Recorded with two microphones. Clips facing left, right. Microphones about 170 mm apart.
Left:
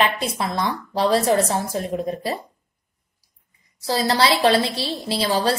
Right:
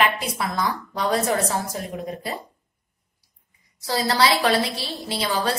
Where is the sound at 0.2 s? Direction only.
25° left (ahead or behind).